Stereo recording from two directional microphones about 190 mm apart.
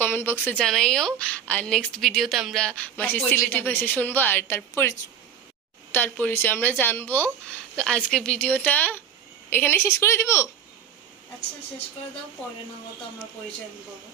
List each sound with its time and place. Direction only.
0.0 s a woman's voice: 10° left (ahead or behind)